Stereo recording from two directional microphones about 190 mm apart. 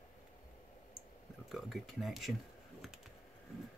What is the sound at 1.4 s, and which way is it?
Speech, centre (ahead or behind).